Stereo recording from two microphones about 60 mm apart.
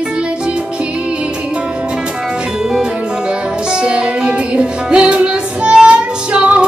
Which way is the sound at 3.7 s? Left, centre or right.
Centre.